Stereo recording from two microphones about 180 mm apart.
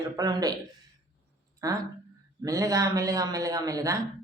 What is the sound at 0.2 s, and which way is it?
Speech, 20° right (ahead or behind).